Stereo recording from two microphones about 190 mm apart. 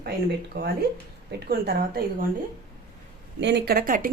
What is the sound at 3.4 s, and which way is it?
Speech, 60° right (ahead or behind).